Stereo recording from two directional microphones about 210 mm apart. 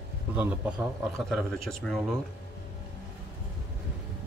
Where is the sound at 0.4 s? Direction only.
5° right (ahead or behind).